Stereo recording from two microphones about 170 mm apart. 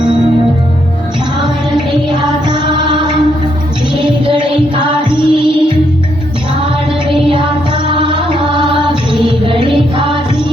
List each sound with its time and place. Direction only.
2.0 s music: 25° right (ahead or behind)
7.3 s music: 30° right (ahead or behind)